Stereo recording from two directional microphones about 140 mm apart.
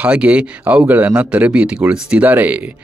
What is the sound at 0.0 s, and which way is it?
Speech, 10° right (ahead or behind).